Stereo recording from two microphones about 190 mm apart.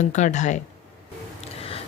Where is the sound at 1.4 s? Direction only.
30° left (ahead or behind).